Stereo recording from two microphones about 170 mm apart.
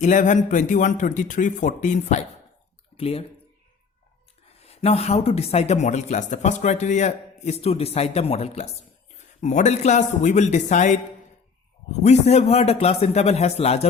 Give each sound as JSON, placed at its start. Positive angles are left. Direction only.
{"t": 0.0, "sound": "a man's voice", "side_deg": 45}
{"t": 3.0, "sound": "speech", "side_deg": 35}
{"t": 4.6, "sound": "a man's voice", "side_deg": 35}